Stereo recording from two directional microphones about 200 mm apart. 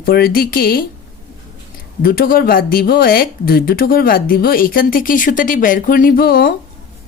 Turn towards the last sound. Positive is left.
turn(degrees=50)  # may be behind; listen again after turning